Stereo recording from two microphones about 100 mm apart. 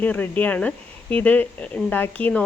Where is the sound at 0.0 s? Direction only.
15° left (ahead or behind).